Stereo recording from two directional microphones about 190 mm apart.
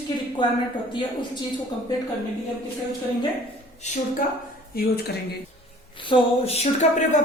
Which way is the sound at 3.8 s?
40° left (ahead or behind).